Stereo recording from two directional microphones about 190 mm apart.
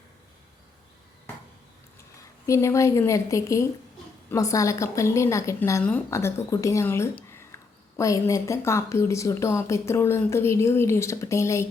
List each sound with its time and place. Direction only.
2.5 s a woman's voice: 15° left (ahead or behind)